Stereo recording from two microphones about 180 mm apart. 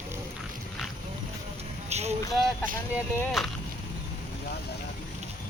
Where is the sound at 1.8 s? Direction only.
35° right (ahead or behind).